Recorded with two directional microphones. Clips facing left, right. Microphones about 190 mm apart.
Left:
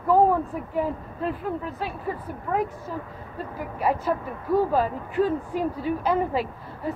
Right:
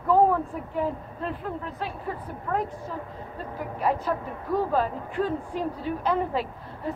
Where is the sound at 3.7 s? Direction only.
5° left (ahead or behind).